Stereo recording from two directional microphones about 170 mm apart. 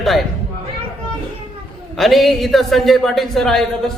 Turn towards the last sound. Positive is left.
turn(degrees=0)  # may be behind; listen again after turning